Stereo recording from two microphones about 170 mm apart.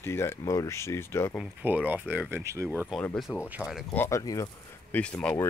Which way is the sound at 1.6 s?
10° right (ahead or behind).